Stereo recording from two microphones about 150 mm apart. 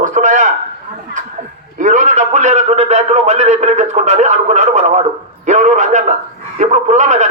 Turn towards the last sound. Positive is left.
turn(degrees=-50)  # may be behind; listen again after turning